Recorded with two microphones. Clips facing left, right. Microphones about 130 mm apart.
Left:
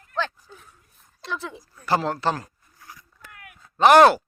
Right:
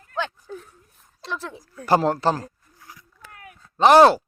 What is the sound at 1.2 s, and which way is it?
Speech, centre (ahead or behind).